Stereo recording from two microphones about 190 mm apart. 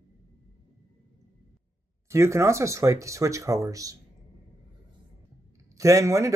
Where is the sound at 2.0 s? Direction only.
15° right (ahead or behind).